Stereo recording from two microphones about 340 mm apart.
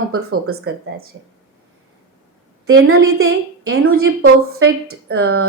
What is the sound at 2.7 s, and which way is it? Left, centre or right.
A woman's voice, right.